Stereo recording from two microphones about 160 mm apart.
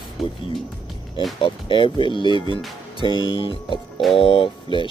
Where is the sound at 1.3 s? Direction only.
30° left (ahead or behind).